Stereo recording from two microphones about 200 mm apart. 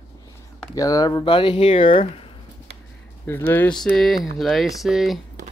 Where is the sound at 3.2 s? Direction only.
10° left (ahead or behind).